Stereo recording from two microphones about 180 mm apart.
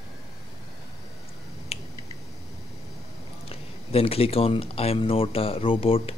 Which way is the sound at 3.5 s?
35° left (ahead or behind).